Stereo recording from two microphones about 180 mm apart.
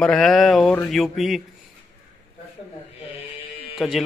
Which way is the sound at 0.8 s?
Centre (ahead or behind).